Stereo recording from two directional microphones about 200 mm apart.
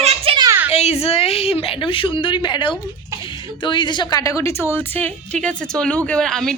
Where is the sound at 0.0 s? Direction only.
30° right (ahead or behind).